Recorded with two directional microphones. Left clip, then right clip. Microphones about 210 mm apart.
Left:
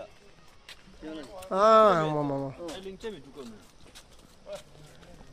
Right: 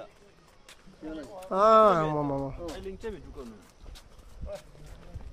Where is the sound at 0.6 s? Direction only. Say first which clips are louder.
Even; 45° right (ahead or behind).